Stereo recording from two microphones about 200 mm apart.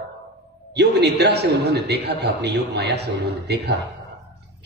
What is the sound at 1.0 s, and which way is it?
A man's voice, 55° right (ahead or behind).